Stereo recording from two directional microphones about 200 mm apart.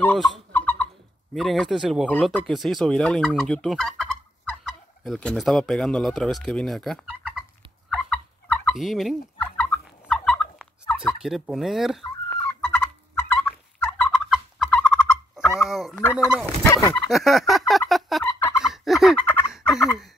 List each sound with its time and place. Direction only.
0.5 s fowl: 10° left (ahead or behind)
1.3 s speech: centre (ahead or behind)
7.9 s fowl: 5° left (ahead or behind)
12.3 s turkey: 10° left (ahead or behind)
15.7 s speech: centre (ahead or behind)
16.0 s turkey: 10° left (ahead or behind)
16.9 s turkey: centre (ahead or behind)
18.6 s fowl: centre (ahead or behind)
19.2 s turkey: 10° left (ahead or behind)